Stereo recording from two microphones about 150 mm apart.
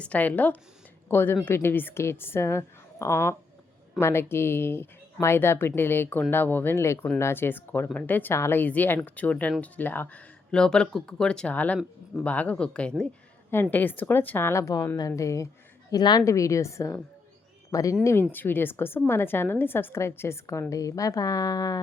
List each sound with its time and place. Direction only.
0.0 s a woman's voice: 10° left (ahead or behind)